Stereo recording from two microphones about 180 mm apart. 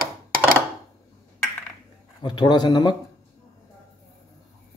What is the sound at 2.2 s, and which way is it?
Speech, 25° left (ahead or behind).